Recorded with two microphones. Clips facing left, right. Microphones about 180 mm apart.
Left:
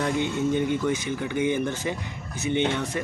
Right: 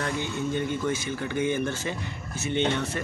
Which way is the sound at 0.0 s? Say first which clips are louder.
Left 5 dB; 20° left (ahead or behind).